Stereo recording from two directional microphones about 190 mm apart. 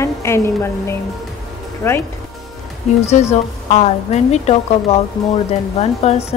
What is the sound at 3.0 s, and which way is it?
A woman's voice, 35° left (ahead or behind).